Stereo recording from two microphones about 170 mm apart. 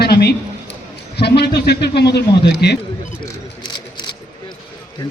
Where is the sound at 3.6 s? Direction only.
25° left (ahead or behind).